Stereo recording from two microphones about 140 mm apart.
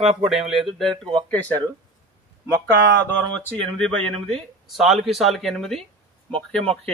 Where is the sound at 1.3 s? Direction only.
10° left (ahead or behind).